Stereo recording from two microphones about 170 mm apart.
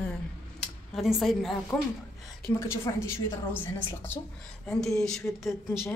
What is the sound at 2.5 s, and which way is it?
A woman's voice, 15° left (ahead or behind).